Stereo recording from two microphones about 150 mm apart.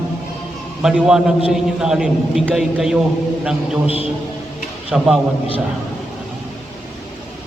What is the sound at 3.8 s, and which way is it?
Speech, 40° left (ahead or behind).